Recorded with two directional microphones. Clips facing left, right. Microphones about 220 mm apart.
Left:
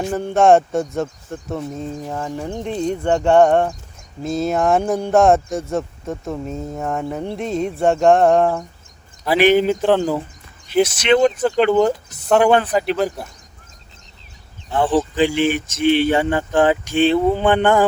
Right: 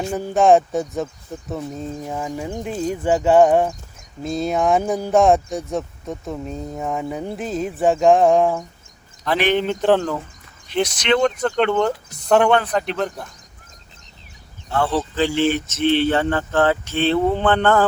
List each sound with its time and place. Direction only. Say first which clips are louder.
0.1 s speech: left 1 dB; 5° right (ahead or behind)
14.7 s speech: left 3 dB; 15° left (ahead or behind)